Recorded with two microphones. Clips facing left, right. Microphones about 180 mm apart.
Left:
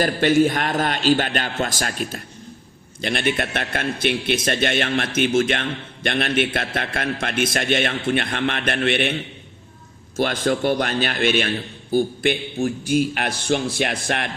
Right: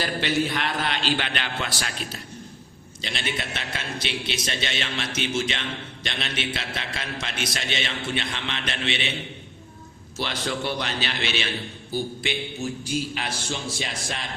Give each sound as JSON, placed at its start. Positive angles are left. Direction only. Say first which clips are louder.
{"t": 0.0, "sound": "a man's voice", "louder": "left 8 dB", "side_deg": 50}
{"t": 10.2, "sound": "a man's voice", "louder": "left 8 dB", "side_deg": 50}